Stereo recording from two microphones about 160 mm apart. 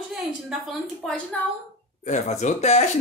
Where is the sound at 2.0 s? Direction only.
50° left (ahead or behind).